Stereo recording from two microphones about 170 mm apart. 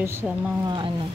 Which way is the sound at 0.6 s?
30° right (ahead or behind).